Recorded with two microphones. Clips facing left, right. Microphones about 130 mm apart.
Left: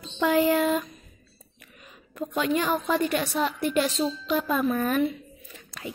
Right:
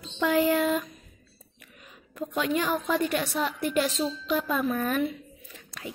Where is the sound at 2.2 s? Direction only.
Centre (ahead or behind).